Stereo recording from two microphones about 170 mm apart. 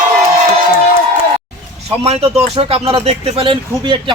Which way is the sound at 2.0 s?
35° right (ahead or behind).